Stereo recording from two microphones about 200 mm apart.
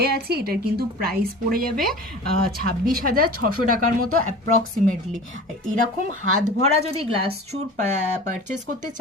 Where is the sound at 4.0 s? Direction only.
90° right.